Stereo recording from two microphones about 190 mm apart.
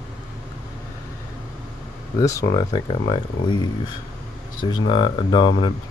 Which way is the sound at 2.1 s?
20° left (ahead or behind).